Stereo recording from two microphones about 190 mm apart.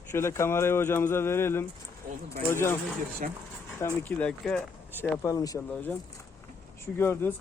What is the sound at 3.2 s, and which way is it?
Speech, 45° right (ahead or behind).